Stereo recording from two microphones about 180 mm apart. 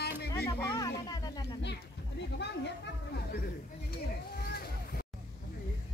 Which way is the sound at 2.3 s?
70° left (ahead or behind).